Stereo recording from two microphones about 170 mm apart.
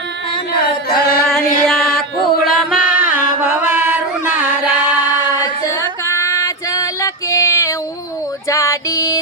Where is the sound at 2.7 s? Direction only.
55° left (ahead or behind).